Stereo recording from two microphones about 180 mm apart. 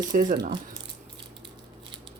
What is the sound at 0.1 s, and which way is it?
Speech, 45° right (ahead or behind).